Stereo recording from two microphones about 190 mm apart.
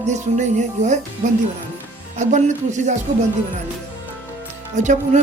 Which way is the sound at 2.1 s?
40° right (ahead or behind).